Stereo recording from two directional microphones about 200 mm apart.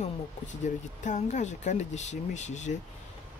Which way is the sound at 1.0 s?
35° left (ahead or behind).